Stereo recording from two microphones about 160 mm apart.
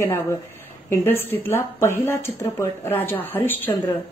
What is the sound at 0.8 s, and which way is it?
Speech, 15° left (ahead or behind).